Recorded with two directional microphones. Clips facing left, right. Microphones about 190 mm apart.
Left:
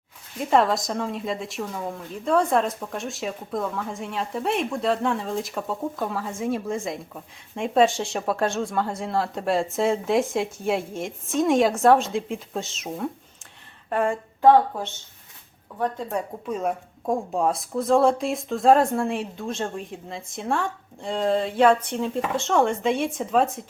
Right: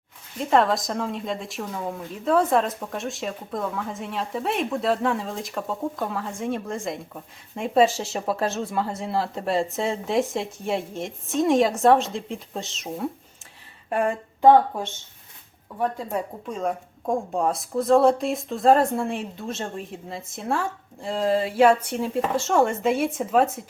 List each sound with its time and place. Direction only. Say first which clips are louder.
0.5 s a woman's voice: even; centre (ahead or behind)
13.9 s speech: even; 15° right (ahead or behind)
15.8 s a woman's voice: even; 5° right (ahead or behind)